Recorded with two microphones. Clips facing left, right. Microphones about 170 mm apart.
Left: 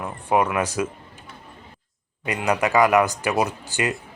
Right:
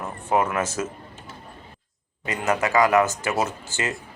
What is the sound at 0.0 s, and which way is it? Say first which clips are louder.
Speech: left 2 dB; 15° left (ahead or behind).